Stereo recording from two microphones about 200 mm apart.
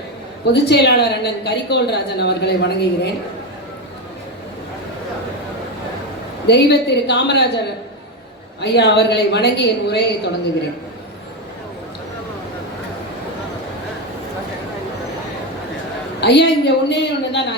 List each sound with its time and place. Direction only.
0.4 s a woman's voice: 55° left (ahead or behind)
6.5 s a woman's voice: 60° left (ahead or behind)
8.6 s a woman's voice: 55° left (ahead or behind)
16.2 s a woman's voice: 60° left (ahead or behind)